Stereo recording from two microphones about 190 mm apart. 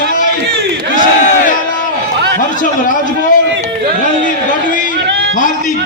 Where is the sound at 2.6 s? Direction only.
45° left (ahead or behind).